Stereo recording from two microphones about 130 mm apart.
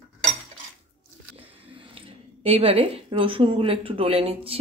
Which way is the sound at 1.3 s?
45° right (ahead or behind).